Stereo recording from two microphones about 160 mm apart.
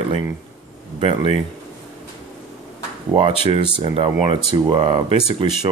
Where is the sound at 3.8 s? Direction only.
35° right (ahead or behind).